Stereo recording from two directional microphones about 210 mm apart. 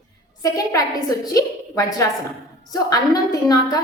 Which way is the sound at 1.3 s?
15° left (ahead or behind).